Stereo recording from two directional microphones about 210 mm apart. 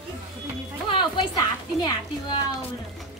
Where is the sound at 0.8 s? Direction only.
25° left (ahead or behind).